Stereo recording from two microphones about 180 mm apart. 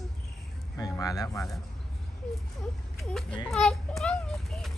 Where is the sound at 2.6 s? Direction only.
Centre (ahead or behind).